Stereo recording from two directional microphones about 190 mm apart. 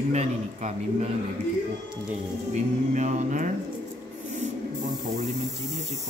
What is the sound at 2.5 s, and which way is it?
A man's voice, 40° right (ahead or behind).